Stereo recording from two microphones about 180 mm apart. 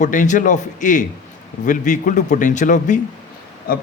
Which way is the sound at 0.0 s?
45° left (ahead or behind).